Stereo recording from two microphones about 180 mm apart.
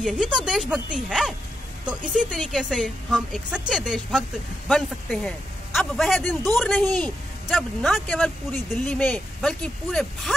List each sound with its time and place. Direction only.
0.0 s speech: centre (ahead or behind)